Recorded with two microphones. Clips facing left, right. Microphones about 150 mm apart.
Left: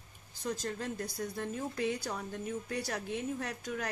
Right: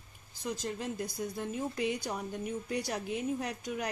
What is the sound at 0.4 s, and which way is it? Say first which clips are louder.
A woman's voice: even; 10° right (ahead or behind).